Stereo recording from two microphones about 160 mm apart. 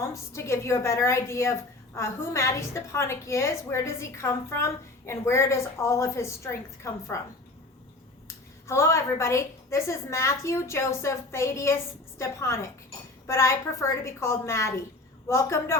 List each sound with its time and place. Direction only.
0.0 s a woman's voice: 15° left (ahead or behind)
8.6 s a woman's voice: 15° left (ahead or behind)